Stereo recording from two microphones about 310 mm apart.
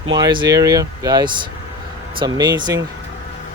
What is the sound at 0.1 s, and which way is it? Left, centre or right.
Speech, centre.